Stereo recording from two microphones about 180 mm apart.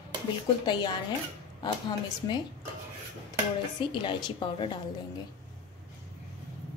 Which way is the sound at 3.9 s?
25° left (ahead or behind).